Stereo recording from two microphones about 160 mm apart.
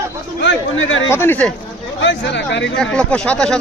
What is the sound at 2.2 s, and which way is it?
Speech, 90° left.